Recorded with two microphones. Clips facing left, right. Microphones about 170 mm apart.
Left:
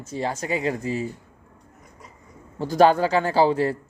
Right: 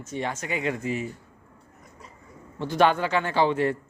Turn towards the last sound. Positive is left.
turn(degrees=35)  # may be behind; listen again after turning